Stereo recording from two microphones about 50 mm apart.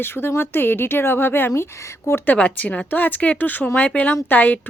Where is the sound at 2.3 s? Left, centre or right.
Left.